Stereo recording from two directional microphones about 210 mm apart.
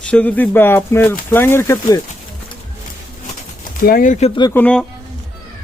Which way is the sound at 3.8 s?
40° left (ahead or behind).